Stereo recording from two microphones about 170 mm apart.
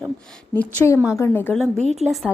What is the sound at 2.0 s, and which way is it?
Speech, 40° right (ahead or behind).